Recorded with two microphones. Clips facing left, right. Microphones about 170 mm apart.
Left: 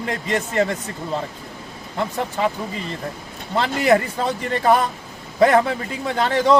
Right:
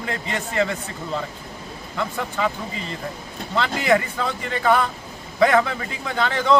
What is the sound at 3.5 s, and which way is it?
Speech, 45° left (ahead or behind).